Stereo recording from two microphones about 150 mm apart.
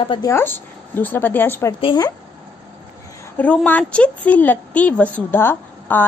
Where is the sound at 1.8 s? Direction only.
30° left (ahead or behind).